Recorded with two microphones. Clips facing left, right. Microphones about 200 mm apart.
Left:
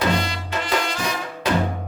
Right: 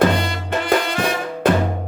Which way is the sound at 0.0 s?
55° right (ahead or behind).